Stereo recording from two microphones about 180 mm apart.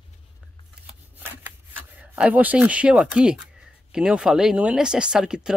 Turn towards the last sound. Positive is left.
turn(degrees=-5)  # may be behind; listen again after turning